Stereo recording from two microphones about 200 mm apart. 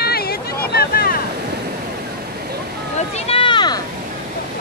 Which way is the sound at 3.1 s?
25° left (ahead or behind).